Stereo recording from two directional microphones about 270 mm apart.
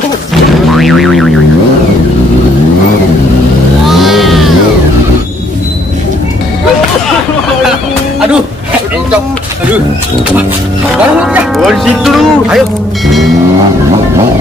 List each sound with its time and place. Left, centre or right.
0.7 s boing: centre
3.8 s vehicle: centre
11.1 s speech: centre